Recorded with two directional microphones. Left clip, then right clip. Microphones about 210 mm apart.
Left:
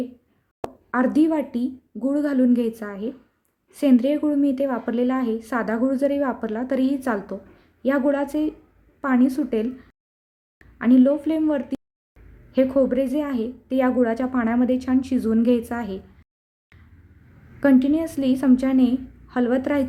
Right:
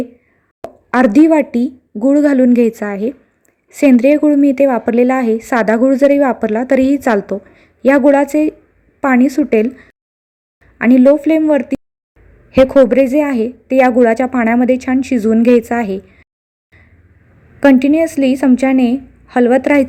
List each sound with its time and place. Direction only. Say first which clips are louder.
0.9 s a woman's voice: right 11 dB; 30° right (ahead or behind)
17.6 s a woman's voice: right 9 dB; 25° right (ahead or behind)